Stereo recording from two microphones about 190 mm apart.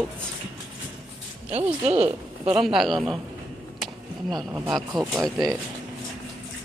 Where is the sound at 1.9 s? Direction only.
30° right (ahead or behind).